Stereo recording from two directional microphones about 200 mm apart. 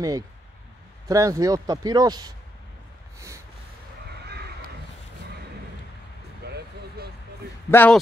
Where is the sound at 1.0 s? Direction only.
15° right (ahead or behind).